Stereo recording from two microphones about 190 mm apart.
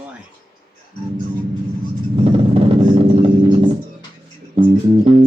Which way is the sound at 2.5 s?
30° right (ahead or behind).